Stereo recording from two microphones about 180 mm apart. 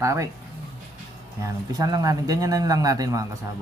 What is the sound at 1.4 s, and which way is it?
Speech, 20° right (ahead or behind).